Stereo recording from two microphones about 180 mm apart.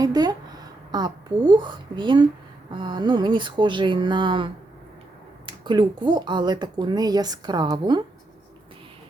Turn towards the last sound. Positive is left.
turn(degrees=-25)  # may be behind; listen again after turning